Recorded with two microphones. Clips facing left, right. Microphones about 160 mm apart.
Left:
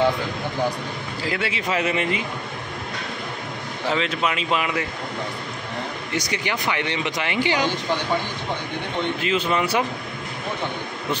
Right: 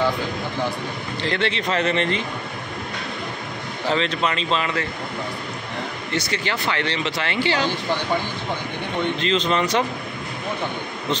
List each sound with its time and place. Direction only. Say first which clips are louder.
1.2 s speech: right 3 dB; 5° left (ahead or behind)
3.9 s speech: right 1 dB; 5° left (ahead or behind)
6.1 s speech: right 1 dB; 15° left (ahead or behind)
9.2 s speech: right 1 dB; 10° left (ahead or behind)